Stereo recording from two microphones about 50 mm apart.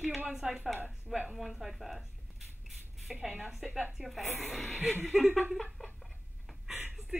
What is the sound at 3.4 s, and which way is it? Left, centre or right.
Speech, centre.